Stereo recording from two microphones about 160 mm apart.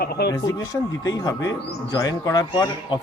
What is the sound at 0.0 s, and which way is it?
Speech, 85° left.